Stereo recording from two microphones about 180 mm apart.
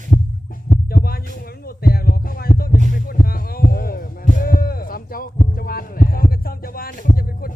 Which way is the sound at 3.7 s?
55° left (ahead or behind).